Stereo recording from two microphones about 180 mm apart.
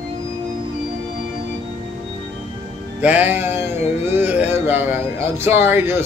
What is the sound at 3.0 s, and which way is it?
Speech, 10° right (ahead or behind).